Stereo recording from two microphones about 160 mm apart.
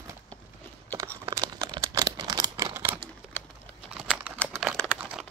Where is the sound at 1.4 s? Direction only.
25° right (ahead or behind).